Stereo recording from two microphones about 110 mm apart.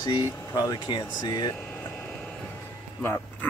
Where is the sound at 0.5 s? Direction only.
35° left (ahead or behind).